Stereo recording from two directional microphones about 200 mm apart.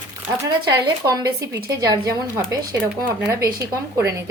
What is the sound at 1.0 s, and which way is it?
A woman's voice, 15° right (ahead or behind).